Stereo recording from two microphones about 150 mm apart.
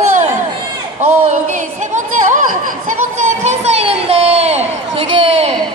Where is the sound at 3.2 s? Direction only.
50° right (ahead or behind).